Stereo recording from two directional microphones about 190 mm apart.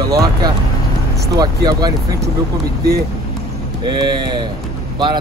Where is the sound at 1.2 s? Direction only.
20° right (ahead or behind).